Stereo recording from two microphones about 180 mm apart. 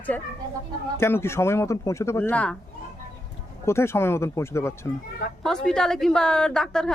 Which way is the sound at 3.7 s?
15° left (ahead or behind).